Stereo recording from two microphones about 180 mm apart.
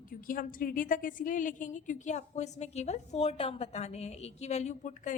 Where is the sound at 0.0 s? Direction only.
50° left (ahead or behind).